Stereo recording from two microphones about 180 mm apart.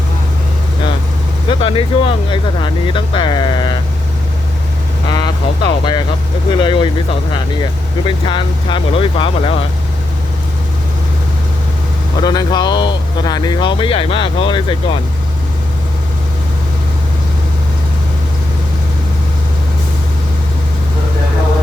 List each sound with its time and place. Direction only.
1.5 s speech: 30° left (ahead or behind)
5.1 s a sound: 25° left (ahead or behind)
6.5 s speech: 25° left (ahead or behind)
12.2 s speech: 25° left (ahead or behind)